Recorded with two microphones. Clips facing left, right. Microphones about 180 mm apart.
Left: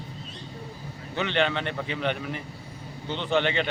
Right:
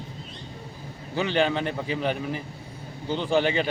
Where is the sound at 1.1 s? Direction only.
5° right (ahead or behind).